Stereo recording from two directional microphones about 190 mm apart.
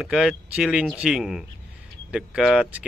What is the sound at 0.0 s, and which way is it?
Speech, centre (ahead or behind).